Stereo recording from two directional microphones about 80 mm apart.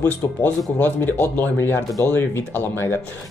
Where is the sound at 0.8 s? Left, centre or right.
Left.